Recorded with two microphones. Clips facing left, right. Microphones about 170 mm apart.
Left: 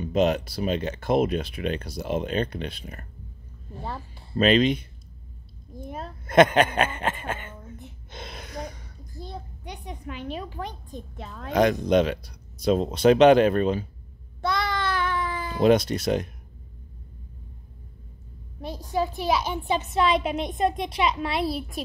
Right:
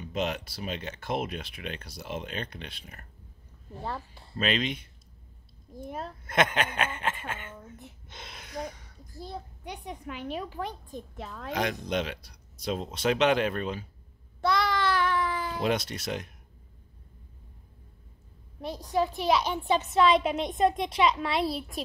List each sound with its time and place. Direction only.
0.0 s speech: 40° left (ahead or behind)
4.4 s speech: 40° left (ahead or behind)
5.8 s a woman's voice: centre (ahead or behind)
6.2 s speech: 40° left (ahead or behind)
8.1 s a sound: 40° left (ahead or behind)
8.5 s a woman's voice: 5° right (ahead or behind)
11.6 s speech: 45° left (ahead or behind)
14.4 s child singing: centre (ahead or behind)
15.7 s speech: 40° left (ahead or behind)
18.6 s a woman's voice: centre (ahead or behind)